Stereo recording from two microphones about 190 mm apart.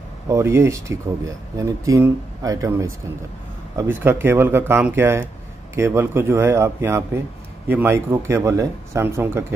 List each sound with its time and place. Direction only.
0.3 s speech: 15° right (ahead or behind)